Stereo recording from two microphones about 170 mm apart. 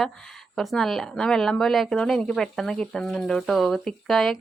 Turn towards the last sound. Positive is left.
turn(degrees=0)  # may be behind; listen again after turning